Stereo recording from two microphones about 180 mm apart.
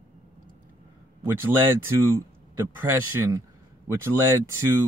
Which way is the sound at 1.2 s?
15° right (ahead or behind).